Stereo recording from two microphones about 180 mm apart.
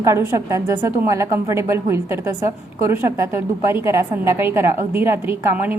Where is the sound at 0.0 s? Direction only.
15° right (ahead or behind).